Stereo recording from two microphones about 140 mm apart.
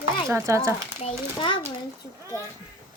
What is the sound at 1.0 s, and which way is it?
Speech, 40° left (ahead or behind).